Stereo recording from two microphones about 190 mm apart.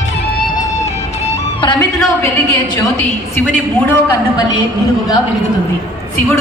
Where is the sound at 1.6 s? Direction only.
25° left (ahead or behind).